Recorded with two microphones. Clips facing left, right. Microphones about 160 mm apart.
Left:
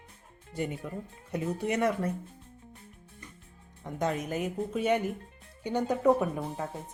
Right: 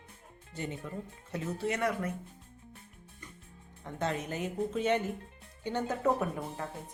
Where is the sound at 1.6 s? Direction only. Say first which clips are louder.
Left 3 dB; 20° left (ahead or behind).